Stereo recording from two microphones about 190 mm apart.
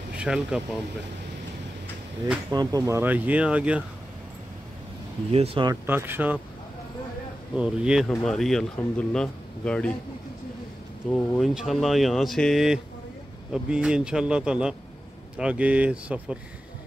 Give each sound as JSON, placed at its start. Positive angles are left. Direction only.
{"t": 0.2, "sound": "speech", "side_deg": -5}
{"t": 2.5, "sound": "speech", "side_deg": -20}
{"t": 5.3, "sound": "speech", "side_deg": -30}
{"t": 5.9, "sound": "speech", "side_deg": -10}
{"t": 7.5, "sound": "speech", "side_deg": -5}
{"t": 11.1, "sound": "speech", "side_deg": 5}